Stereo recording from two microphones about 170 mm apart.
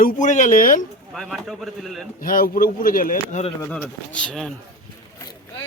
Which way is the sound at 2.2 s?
55° left (ahead or behind).